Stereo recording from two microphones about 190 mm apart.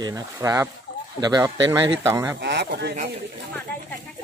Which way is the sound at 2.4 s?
60° right (ahead or behind).